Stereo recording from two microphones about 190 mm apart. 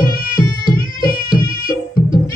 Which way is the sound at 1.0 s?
50° left (ahead or behind).